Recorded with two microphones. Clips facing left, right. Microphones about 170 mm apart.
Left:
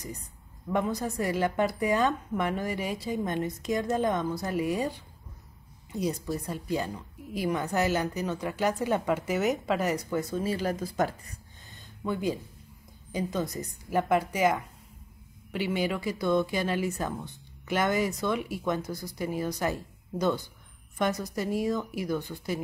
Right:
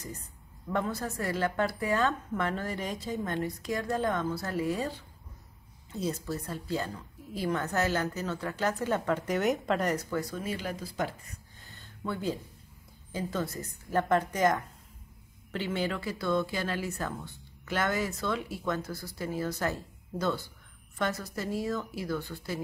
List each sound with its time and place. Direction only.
0.7 s speech: 15° left (ahead or behind)
10.3 s speech: 35° left (ahead or behind)
12.0 s speech: 15° left (ahead or behind)